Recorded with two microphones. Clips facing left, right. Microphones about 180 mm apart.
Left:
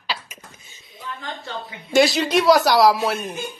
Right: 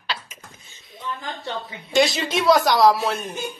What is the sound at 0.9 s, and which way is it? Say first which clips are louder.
Speech: right 2 dB; 25° right (ahead or behind).